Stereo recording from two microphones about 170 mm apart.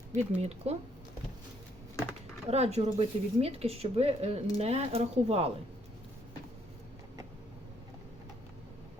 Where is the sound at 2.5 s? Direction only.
40° right (ahead or behind).